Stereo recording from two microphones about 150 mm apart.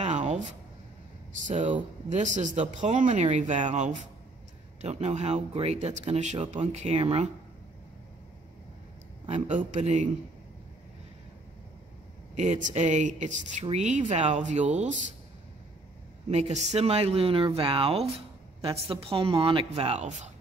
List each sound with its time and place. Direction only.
0.0 s a sound: 50° right (ahead or behind)
2.0 s speech: 55° right (ahead or behind)
9.5 s speech: 55° right (ahead or behind)
12.4 s speech: 55° right (ahead or behind)
16.3 s speech: 45° right (ahead or behind)